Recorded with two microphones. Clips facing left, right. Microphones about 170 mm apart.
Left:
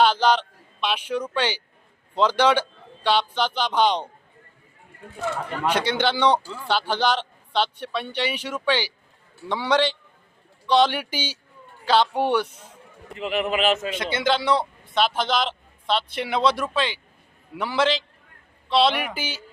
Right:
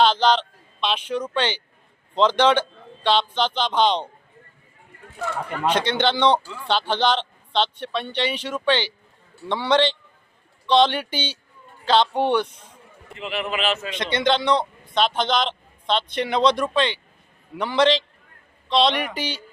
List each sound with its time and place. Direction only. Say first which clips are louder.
0.0 s a man's voice: right 1 dB; 10° left (ahead or behind)
5.6 s a man's voice: right 2 dB; 10° left (ahead or behind)
13.1 s a man's voice: left 3 dB; 45° left (ahead or behind)
13.9 s a man's voice: right 2 dB; 5° left (ahead or behind)